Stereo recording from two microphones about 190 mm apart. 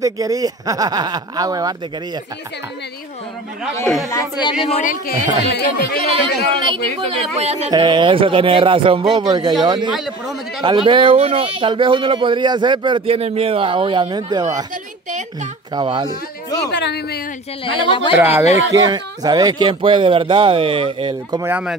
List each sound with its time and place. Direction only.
0.0 s speech: 20° right (ahead or behind)
3.8 s speech: centre (ahead or behind)
4.1 s speech: 20° left (ahead or behind); by 5.1 s 45° left (ahead or behind)
5.4 s speech: 60° left (ahead or behind)
6.5 s speech: 25° right (ahead or behind)
7.7 s speech: 25° right (ahead or behind)
9.8 s speech: centre (ahead or behind)
10.6 s speech: 25° right (ahead or behind)
15.7 s speech: 25° right (ahead or behind)
16.7 s speech: 60° left (ahead or behind)
17.8 s speech: 25° left (ahead or behind)
18.1 s speech: 10° right (ahead or behind); by 21.4 s 30° right (ahead or behind)
21.4 s speech: 10° right (ahead or behind)